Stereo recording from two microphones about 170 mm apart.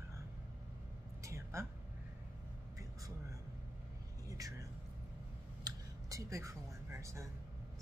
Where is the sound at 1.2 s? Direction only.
15° right (ahead or behind).